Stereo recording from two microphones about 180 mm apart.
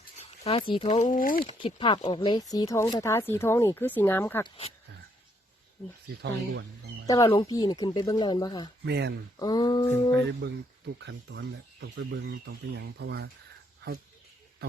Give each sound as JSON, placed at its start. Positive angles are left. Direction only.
{"t": 0.2, "sound": "a sound", "side_deg": 35}
{"t": 0.7, "sound": "speech", "side_deg": 35}
{"t": 1.5, "sound": "speech", "side_deg": 25}
{"t": 4.4, "sound": "speech", "side_deg": 30}
{"t": 7.1, "sound": "speech", "side_deg": 20}
{"t": 8.8, "sound": "speech", "side_deg": -70}
{"t": 9.4, "sound": "speech", "side_deg": 20}
{"t": 10.4, "sound": "speech", "side_deg": -70}